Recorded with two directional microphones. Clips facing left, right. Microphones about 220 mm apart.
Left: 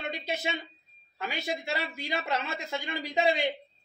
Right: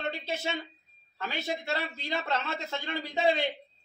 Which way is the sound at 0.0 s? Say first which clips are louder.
Even; 15° left (ahead or behind).